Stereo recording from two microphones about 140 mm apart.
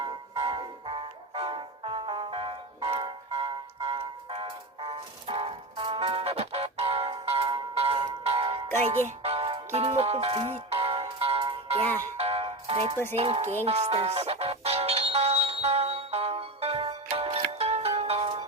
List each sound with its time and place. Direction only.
0.3 s music: 40° right (ahead or behind)